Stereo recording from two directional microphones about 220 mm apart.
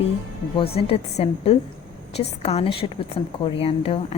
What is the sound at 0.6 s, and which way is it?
A woman's voice, 25° left (ahead or behind).